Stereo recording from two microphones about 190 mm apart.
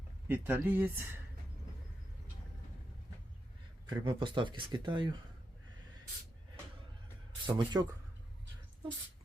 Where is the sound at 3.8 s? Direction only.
25° right (ahead or behind).